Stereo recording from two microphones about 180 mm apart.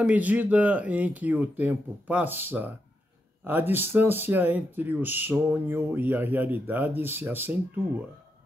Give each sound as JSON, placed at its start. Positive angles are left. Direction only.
{"t": 0.0, "sound": "speech", "side_deg": -10}